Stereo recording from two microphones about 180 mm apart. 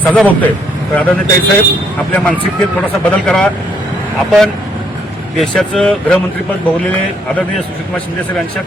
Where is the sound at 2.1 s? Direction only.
5° left (ahead or behind).